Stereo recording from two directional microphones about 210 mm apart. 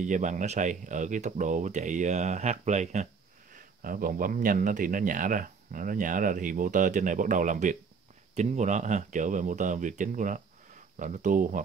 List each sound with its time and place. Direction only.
0.0 s a man's voice: 35° right (ahead or behind)